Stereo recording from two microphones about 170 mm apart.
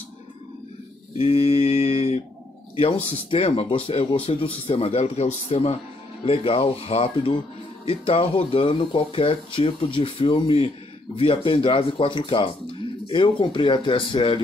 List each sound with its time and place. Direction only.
1.1 s mantra: 35° left (ahead or behind)
2.8 s speech: 35° left (ahead or behind)